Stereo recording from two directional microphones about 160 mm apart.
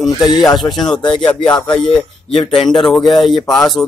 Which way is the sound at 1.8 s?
30° left (ahead or behind).